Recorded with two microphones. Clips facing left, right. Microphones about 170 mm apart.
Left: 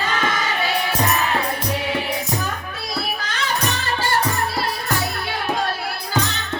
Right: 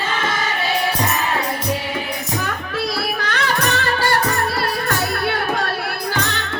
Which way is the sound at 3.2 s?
65° right (ahead or behind).